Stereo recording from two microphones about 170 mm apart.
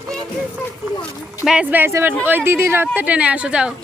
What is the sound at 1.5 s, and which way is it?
Speech, 10° right (ahead or behind).